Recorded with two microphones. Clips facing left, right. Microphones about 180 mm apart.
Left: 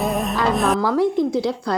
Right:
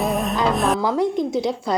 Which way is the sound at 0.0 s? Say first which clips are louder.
Even; centre (ahead or behind).